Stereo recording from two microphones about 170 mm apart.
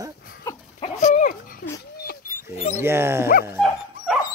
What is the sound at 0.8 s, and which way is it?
Dog, 40° left (ahead or behind).